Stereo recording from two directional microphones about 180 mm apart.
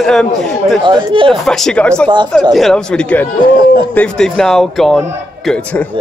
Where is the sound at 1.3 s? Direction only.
Centre (ahead or behind).